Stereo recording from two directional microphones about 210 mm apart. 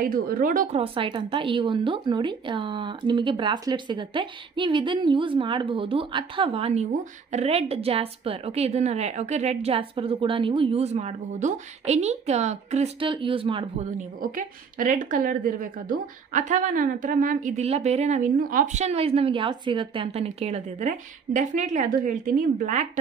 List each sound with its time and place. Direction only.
0.1 s speech: 40° right (ahead or behind)
0.7 s speech: 25° right (ahead or behind)
13.9 s speech: 40° right (ahead or behind)